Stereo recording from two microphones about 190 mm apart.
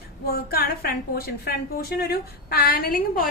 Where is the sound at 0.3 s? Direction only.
55° left (ahead or behind).